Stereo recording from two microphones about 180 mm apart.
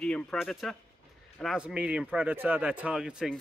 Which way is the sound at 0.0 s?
5° left (ahead or behind).